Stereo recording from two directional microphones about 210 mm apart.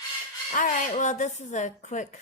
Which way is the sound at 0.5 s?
40° left (ahead or behind).